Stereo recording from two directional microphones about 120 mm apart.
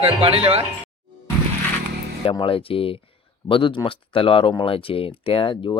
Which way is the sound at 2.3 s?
50° left (ahead or behind).